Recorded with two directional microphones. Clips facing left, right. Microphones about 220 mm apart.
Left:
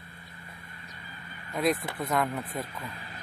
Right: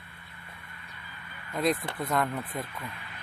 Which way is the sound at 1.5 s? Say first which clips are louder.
Even; centre (ahead or behind).